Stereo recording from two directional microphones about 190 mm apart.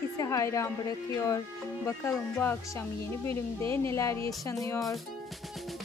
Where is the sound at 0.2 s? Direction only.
15° left (ahead or behind).